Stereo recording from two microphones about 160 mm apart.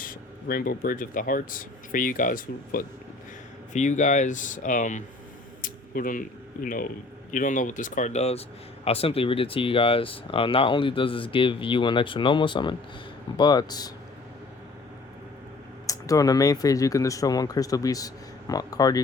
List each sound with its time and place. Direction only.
0.0 s a man's voice: 65° left (ahead or behind); by 13.9 s 25° left (ahead or behind)
15.9 s speech: 20° left (ahead or behind)